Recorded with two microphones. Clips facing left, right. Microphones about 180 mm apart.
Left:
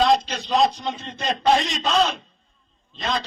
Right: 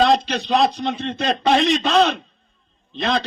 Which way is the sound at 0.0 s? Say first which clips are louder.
Right 2 dB; 65° right (ahead or behind).